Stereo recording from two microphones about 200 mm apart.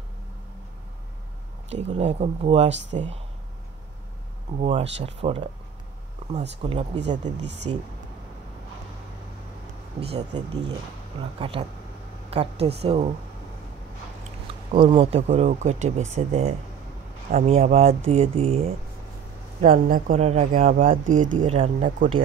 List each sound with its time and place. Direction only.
1.7 s speech: 35° right (ahead or behind)
4.6 s speech: 35° right (ahead or behind)
6.6 s speech: 30° right (ahead or behind)
9.9 s speech: 30° right (ahead or behind)
14.7 s speech: 30° right (ahead or behind)
19.6 s speech: 45° right (ahead or behind)